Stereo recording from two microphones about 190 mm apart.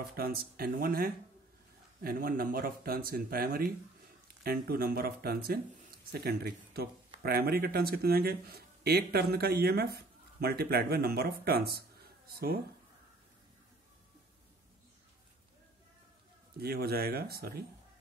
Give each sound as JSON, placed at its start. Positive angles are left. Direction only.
{"t": 0.1, "sound": "speech", "side_deg": -50}
{"t": 16.5, "sound": "speech", "side_deg": -55}